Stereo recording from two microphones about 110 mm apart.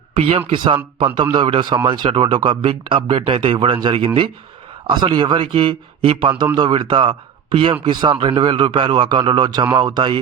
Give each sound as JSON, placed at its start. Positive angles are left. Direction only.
{"t": 0.2, "sound": "a man's voice", "side_deg": -55}